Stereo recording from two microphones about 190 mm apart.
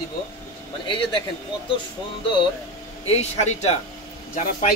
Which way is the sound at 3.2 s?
35° left (ahead or behind).